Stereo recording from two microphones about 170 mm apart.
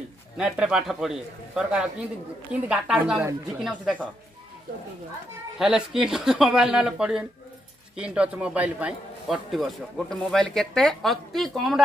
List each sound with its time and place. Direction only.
0.4 s a man's voice: 5° right (ahead or behind)
5.6 s a man's voice: 5° right (ahead or behind)